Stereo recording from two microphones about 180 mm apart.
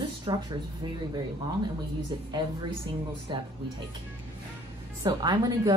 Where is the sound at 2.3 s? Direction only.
25° right (ahead or behind).